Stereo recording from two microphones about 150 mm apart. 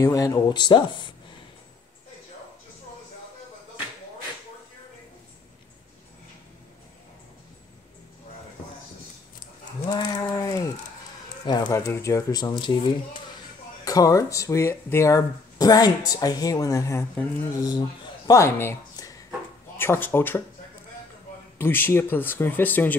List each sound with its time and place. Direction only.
0.0 s speech: 20° left (ahead or behind)
9.8 s a sound: 25° left (ahead or behind)
11.4 s speech: 30° left (ahead or behind)
21.5 s speech: 15° left (ahead or behind)